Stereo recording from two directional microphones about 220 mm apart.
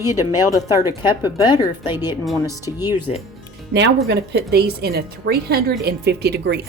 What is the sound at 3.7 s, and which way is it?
Speech, 50° right (ahead or behind).